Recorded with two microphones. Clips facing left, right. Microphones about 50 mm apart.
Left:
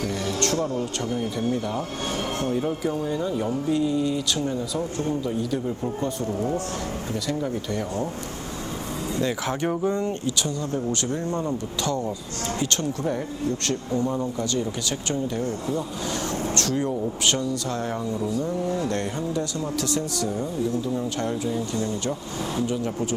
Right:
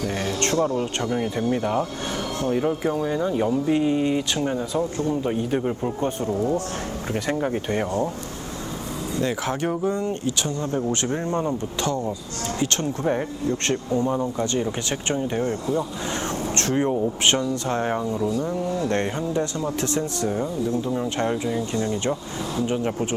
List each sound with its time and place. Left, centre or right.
0.3 s speech: right
9.2 s speech: right
9.8 s speech: left
10.1 s speech: right